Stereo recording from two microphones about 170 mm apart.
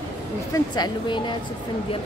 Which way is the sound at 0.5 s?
25° left (ahead or behind).